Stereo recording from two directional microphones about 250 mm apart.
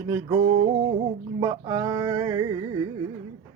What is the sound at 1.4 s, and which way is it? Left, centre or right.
Music, centre.